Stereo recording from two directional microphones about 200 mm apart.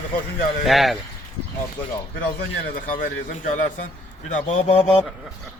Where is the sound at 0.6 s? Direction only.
Centre (ahead or behind).